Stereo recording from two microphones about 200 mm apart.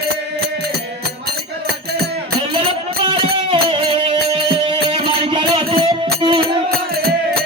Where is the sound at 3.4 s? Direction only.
25° right (ahead or behind).